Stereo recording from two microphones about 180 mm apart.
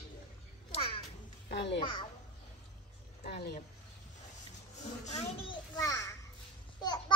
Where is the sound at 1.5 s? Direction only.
65° left (ahead or behind).